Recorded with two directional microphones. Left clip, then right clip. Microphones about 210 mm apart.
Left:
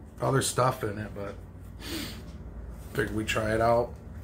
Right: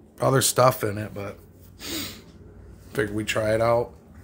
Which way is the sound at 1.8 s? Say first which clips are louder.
Right 4 dB; 45° right (ahead or behind).